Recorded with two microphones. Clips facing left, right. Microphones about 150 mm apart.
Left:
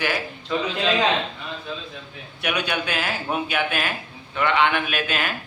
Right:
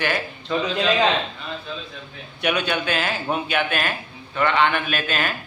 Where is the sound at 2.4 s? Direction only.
5° left (ahead or behind).